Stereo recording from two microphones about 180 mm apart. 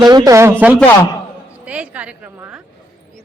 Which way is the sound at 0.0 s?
20° right (ahead or behind).